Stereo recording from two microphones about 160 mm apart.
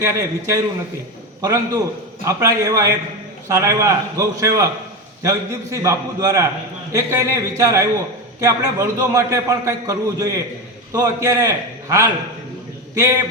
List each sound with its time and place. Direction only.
0.0 s a man's voice: 20° right (ahead or behind)